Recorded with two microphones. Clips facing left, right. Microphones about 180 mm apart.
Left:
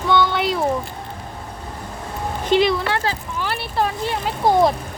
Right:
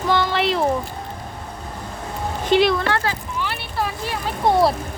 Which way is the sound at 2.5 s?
50° right (ahead or behind).